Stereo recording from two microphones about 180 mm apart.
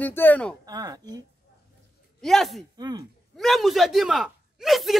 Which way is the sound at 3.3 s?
Centre (ahead or behind).